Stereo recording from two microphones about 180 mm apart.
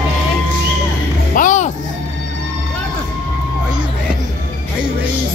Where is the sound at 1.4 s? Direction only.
45° left (ahead or behind).